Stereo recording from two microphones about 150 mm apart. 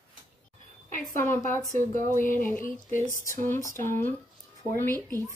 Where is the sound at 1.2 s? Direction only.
15° left (ahead or behind).